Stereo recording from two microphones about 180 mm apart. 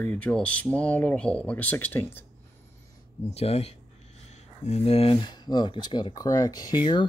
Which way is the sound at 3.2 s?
35° left (ahead or behind).